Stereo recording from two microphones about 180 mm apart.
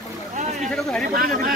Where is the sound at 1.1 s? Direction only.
50° right (ahead or behind).